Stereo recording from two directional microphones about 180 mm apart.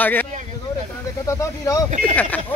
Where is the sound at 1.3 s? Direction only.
15° left (ahead or behind).